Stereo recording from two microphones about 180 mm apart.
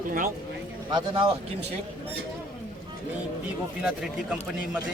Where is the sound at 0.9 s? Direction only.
25° right (ahead or behind).